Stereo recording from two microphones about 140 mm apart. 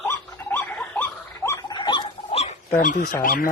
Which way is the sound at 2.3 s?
50° left (ahead or behind).